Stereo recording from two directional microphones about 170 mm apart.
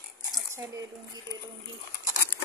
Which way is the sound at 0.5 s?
15° right (ahead or behind).